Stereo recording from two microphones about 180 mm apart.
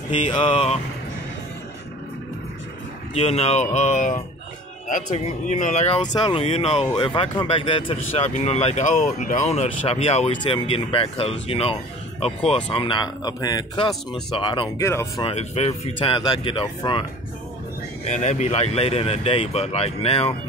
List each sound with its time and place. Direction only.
0.3 s speech: 30° left (ahead or behind)
3.2 s speech: 35° left (ahead or behind)
12.7 s speech: 25° left (ahead or behind)
14.8 s speech: 15° left (ahead or behind)
15.2 s speech: 35° left (ahead or behind)
18.2 s speech: 40° left (ahead or behind)